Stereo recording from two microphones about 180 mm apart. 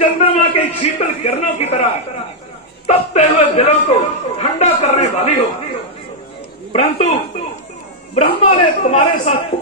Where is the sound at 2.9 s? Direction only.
40° left (ahead or behind).